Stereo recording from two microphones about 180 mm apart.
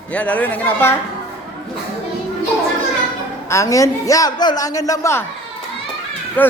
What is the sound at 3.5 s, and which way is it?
A man's voice, 15° left (ahead or behind).